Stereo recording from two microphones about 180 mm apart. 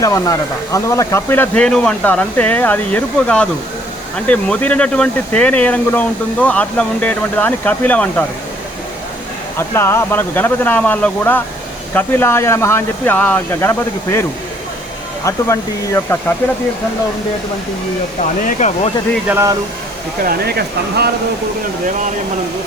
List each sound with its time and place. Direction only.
0.0 s speech: 20° left (ahead or behind)
9.6 s speech: 15° left (ahead or behind)
18.4 s speech: 40° left (ahead or behind)
19.3 s speech: 15° right (ahead or behind)
20.2 s speech: 60° right (ahead or behind)